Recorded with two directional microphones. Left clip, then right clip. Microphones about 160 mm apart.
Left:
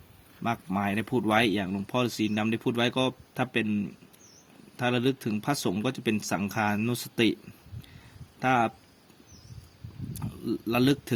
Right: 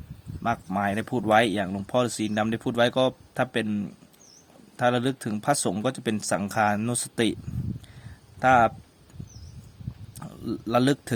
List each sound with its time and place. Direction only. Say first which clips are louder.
0.4 s speech: right 4 dB; 10° right (ahead or behind)
8.4 s speech: right 6 dB; 15° right (ahead or behind)
10.2 s speech: left 1 dB; 15° right (ahead or behind)